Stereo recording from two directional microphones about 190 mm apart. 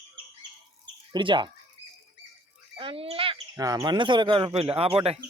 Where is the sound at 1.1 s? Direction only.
25° right (ahead or behind).